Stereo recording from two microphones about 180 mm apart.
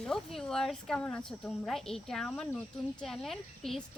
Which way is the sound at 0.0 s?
Centre (ahead or behind).